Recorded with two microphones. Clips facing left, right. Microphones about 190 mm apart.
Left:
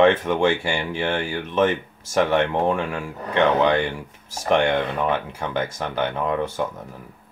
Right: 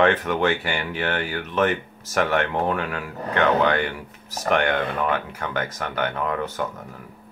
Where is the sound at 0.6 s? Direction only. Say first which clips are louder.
Left 2 dB; 10° left (ahead or behind).